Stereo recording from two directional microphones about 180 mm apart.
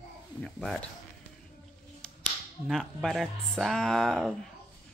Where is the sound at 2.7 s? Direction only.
Centre (ahead or behind).